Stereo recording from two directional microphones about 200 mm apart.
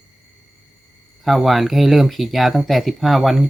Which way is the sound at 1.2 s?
Centre (ahead or behind).